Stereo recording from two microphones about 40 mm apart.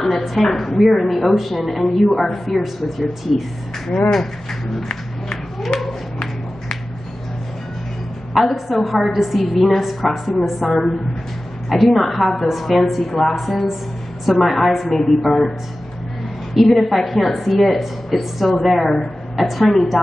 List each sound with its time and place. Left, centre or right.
0.0 s a woman's voice: centre
2.4 s a woman's voice: centre
5.7 s cat: centre
8.4 s a woman's voice: centre
16.5 s a woman's voice: centre